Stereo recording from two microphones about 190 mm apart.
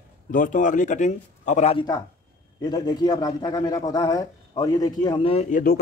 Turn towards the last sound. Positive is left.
turn(degrees=50)  # may be behind; listen again after turning